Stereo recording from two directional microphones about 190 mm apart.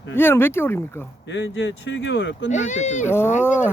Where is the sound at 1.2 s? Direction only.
70° left (ahead or behind).